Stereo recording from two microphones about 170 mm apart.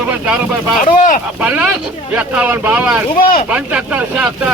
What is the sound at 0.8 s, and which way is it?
Speech, 50° left (ahead or behind).